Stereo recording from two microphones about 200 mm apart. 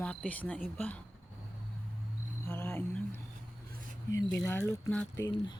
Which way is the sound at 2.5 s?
10° left (ahead or behind).